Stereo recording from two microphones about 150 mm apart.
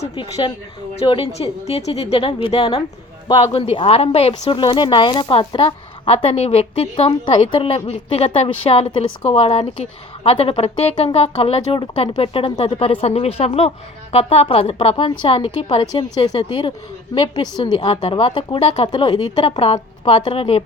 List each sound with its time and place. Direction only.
0.9 s speech: 35° left (ahead or behind)